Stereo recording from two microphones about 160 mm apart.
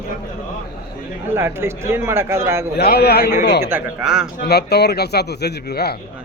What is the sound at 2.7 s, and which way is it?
Speech, 80° left.